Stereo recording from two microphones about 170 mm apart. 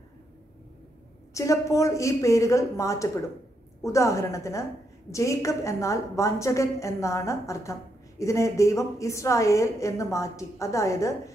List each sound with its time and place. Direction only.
1.3 s a woman's voice: 20° left (ahead or behind)